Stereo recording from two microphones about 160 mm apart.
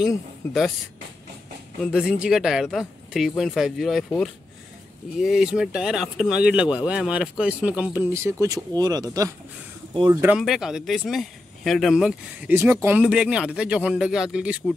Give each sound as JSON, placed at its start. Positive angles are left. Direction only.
{"t": 1.8, "sound": "speech", "side_deg": -5}
{"t": 10.2, "sound": "speech", "side_deg": -5}
{"t": 12.5, "sound": "speech", "side_deg": -15}